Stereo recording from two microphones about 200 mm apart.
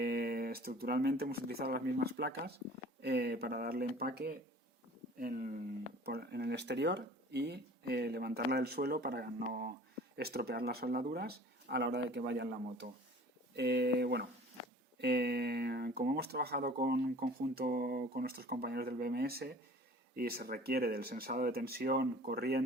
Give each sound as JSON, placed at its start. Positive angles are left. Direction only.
{"t": 0.0, "sound": "a sound", "side_deg": -50}
{"t": 0.8, "sound": "speech", "side_deg": -50}
{"t": 6.1, "sound": "speech", "side_deg": -55}